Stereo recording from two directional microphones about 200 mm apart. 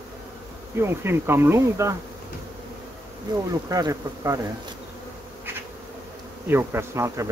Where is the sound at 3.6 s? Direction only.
15° right (ahead or behind).